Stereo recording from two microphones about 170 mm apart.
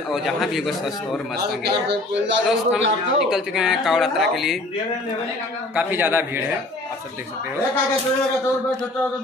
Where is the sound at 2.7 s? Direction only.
5° right (ahead or behind).